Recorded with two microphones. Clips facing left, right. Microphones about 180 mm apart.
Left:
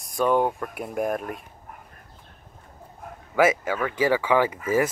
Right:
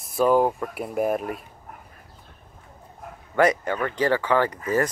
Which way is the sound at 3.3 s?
5° left (ahead or behind).